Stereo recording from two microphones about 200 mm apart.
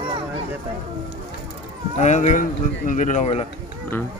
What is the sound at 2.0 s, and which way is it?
Speech, 35° left (ahead or behind).